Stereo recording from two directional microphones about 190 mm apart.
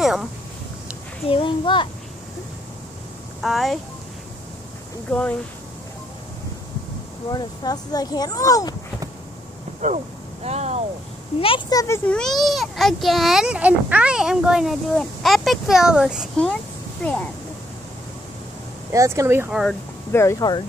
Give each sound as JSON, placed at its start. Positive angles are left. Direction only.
{"t": 0.0, "sound": "a sound", "side_deg": 0}
{"t": 1.3, "sound": "speech", "side_deg": 25}
{"t": 3.3, "sound": "a child's voice", "side_deg": 0}
{"t": 5.1, "sound": "a child's voice", "side_deg": 5}
{"t": 7.2, "sound": "speech", "side_deg": 20}
{"t": 10.4, "sound": "a sound", "side_deg": -35}
{"t": 11.4, "sound": "speech", "side_deg": 25}
{"t": 12.1, "sound": "a child's voice", "side_deg": 0}
{"t": 18.9, "sound": "speech", "side_deg": -15}
{"t": 19.6, "sound": "a sound", "side_deg": 5}
{"t": 20.2, "sound": "speech", "side_deg": 15}